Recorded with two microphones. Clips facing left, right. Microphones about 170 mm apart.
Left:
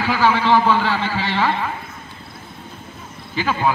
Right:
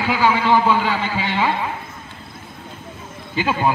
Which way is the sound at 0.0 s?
10° right (ahead or behind).